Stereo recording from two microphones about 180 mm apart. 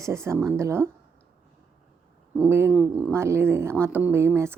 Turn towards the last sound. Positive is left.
turn(degrees=-15)  # may be behind; listen again after turning